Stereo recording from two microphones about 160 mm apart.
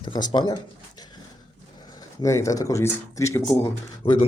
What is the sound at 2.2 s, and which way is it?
Speech, 20° left (ahead or behind).